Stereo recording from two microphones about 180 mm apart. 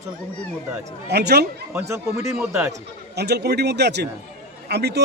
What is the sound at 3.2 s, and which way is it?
Speech, 65° right (ahead or behind).